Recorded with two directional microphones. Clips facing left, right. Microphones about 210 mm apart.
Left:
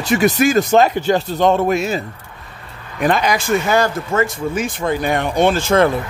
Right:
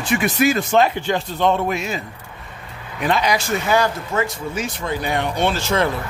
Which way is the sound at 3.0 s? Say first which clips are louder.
Left 3 dB; 50° left (ahead or behind).